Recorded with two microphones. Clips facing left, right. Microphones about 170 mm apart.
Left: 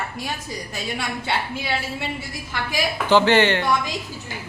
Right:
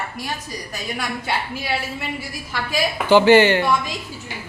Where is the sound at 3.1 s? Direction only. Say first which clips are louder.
Right 4 dB; 10° right (ahead or behind).